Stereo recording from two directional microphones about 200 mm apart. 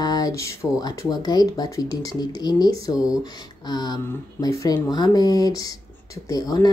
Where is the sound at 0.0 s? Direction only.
20° left (ahead or behind).